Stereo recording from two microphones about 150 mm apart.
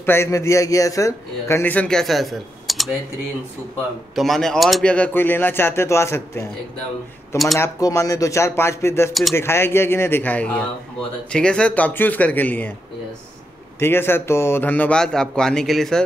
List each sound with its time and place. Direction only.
0.0 s a man's voice: 15° left (ahead or behind); by 2.9 s centre (ahead or behind)
4.1 s a man's voice: centre (ahead or behind); by 6.4 s 20° left (ahead or behind)
7.5 s a man's voice: 20° left (ahead or behind)
13.7 s a man's voice: 15° left (ahead or behind)